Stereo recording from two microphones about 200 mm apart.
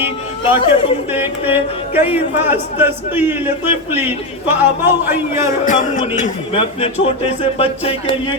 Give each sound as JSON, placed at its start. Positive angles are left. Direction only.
{"t": 0.6, "sound": "speech", "side_deg": 25}
{"t": 1.1, "sound": "speech", "side_deg": -10}
{"t": 5.6, "sound": "speech", "side_deg": 40}
{"t": 6.5, "sound": "speech", "side_deg": 30}